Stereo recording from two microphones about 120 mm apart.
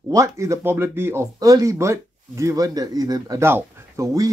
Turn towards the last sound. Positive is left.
turn(degrees=-30)  # may be behind; listen again after turning